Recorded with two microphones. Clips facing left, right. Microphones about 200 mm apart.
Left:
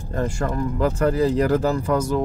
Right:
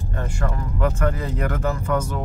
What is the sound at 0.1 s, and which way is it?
Speech, 35° left (ahead or behind).